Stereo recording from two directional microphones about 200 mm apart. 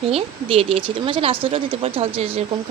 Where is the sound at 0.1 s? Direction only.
30° right (ahead or behind).